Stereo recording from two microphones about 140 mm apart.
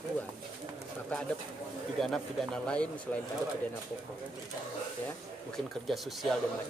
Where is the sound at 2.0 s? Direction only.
5° left (ahead or behind).